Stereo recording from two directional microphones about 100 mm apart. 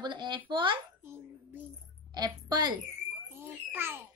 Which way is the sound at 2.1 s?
45° right (ahead or behind).